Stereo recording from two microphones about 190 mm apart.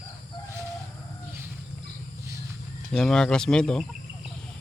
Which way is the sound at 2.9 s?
5° left (ahead or behind).